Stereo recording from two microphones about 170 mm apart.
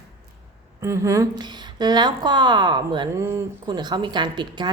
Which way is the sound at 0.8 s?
20° right (ahead or behind).